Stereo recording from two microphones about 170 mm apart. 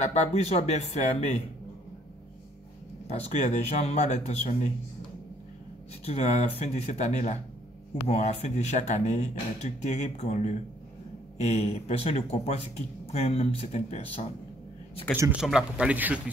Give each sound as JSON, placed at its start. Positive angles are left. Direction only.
{"t": 0.0, "sound": "speech", "side_deg": 40}
{"t": 3.1, "sound": "speech", "side_deg": 40}
{"t": 6.0, "sound": "speech", "side_deg": 40}
{"t": 15.4, "sound": "speech", "side_deg": -5}